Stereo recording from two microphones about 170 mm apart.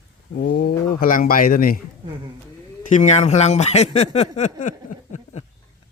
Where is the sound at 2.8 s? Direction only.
45° left (ahead or behind).